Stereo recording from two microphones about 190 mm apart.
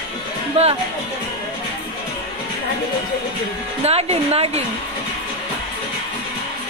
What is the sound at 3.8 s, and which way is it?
Speech, 35° right (ahead or behind).